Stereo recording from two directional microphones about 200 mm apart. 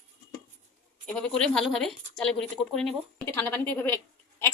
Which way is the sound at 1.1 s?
5° left (ahead or behind).